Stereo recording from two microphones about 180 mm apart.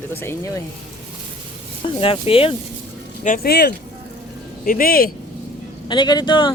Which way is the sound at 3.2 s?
55° left (ahead or behind).